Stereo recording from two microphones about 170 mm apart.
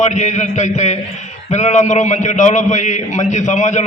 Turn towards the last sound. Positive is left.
turn(degrees=45)  # may be behind; listen again after turning